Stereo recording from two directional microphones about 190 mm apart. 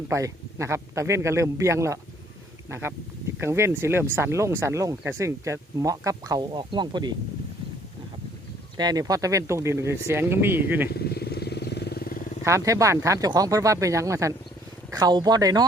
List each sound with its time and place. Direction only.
0.1 s speech: 15° right (ahead or behind)
8.8 s speech: 20° right (ahead or behind)
10.9 s vehicle: 55° left (ahead or behind)
12.5 s speech: 15° right (ahead or behind)